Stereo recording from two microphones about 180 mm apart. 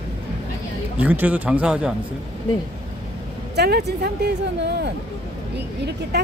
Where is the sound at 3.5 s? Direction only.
65° right (ahead or behind).